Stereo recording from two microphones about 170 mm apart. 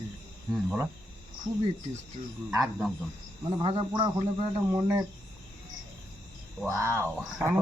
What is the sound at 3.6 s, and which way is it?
A man's voice, 30° right (ahead or behind).